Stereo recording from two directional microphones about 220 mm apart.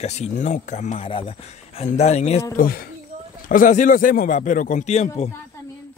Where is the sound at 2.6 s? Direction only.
40° left (ahead or behind).